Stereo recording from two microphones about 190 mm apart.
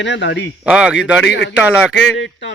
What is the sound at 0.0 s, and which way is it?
Speech, 70° left (ahead or behind).